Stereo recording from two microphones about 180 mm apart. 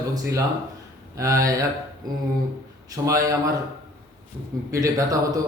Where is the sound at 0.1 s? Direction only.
20° right (ahead or behind).